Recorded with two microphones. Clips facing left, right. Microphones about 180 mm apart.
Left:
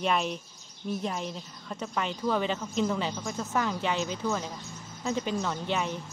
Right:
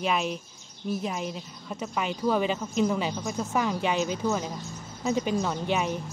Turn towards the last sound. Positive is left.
turn(degrees=-15)  # may be behind; listen again after turning